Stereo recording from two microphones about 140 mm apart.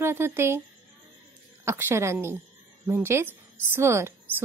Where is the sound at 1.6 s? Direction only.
15° right (ahead or behind).